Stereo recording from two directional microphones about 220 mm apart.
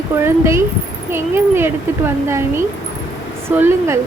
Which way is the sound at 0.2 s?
10° right (ahead or behind).